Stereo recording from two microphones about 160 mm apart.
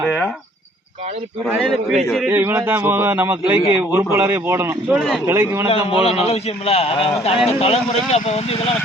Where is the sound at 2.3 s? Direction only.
15° right (ahead or behind).